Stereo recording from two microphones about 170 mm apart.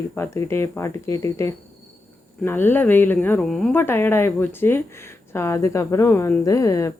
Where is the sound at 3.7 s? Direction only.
15° left (ahead or behind).